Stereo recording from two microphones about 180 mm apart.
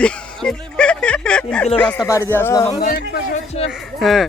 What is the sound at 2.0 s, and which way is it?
Speech, 15° left (ahead or behind).